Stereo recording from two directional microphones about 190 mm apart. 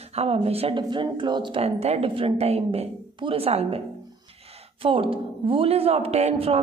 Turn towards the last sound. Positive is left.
turn(degrees=-30)  # may be behind; listen again after turning